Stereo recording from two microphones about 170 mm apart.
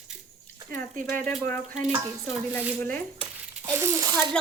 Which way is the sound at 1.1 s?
10° left (ahead or behind).